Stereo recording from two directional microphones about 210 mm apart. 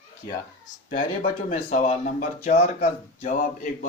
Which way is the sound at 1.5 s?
35° left (ahead or behind).